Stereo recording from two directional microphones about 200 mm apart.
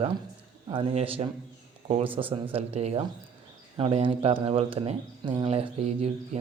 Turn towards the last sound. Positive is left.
turn(degrees=-30)  # may be behind; listen again after turning